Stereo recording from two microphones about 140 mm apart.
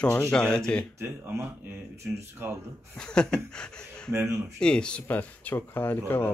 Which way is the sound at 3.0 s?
5° left (ahead or behind).